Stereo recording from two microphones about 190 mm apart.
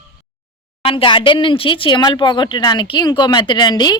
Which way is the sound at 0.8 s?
30° left (ahead or behind).